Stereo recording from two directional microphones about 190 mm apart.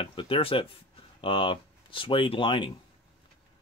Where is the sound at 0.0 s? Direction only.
25° left (ahead or behind).